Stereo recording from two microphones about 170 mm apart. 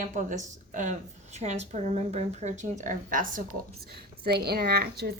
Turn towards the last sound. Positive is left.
turn(degrees=-65)  # may be behind; listen again after turning